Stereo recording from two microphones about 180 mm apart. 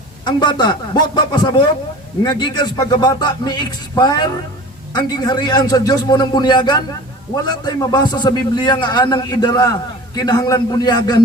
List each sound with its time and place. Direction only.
0.3 s a man's voice: 25° left (ahead or behind)